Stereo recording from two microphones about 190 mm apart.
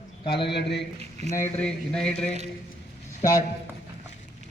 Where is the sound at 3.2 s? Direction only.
20° left (ahead or behind).